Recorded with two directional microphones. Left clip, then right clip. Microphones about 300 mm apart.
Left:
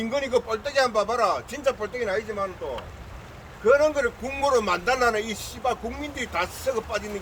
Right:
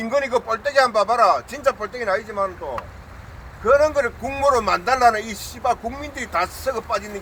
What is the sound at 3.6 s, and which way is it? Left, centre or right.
A man's voice, centre.